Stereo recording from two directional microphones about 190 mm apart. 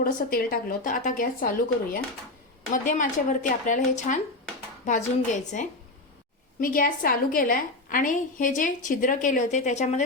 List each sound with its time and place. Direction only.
0.0 s a woman's voice: 50° left (ahead or behind)